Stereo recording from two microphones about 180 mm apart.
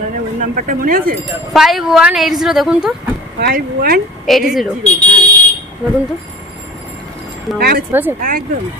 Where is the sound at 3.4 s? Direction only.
60° right (ahead or behind).